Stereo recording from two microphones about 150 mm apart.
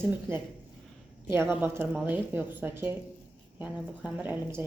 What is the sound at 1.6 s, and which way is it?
Speech, 15° right (ahead or behind).